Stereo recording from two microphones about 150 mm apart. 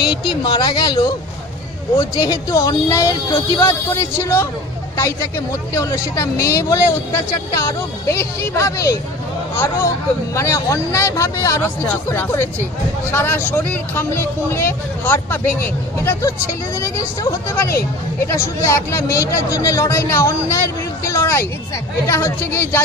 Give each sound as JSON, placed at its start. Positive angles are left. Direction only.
{"t": 0.0, "sound": "speech", "side_deg": 0}
{"t": 0.4, "sound": "speech", "side_deg": 30}
{"t": 10.3, "sound": "speech", "side_deg": 20}